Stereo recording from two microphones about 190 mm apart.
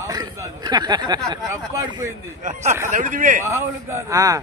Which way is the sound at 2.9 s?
45° right (ahead or behind).